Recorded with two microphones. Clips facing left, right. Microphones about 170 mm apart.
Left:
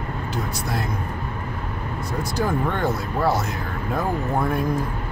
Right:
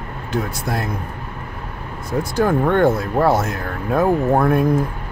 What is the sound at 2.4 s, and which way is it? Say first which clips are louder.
Speech: right 8 dB; 55° right (ahead or behind).